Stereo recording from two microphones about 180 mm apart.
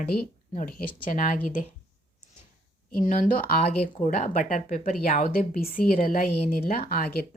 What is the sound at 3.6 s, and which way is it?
Speech, 35° left (ahead or behind).